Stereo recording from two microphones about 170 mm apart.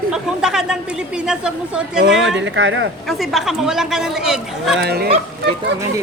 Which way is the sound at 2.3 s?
90° right.